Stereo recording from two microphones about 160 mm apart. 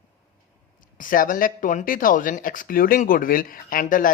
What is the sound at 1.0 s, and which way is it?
Speech, 60° left (ahead or behind).